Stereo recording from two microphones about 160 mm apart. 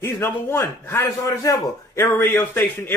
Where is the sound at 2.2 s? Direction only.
15° left (ahead or behind).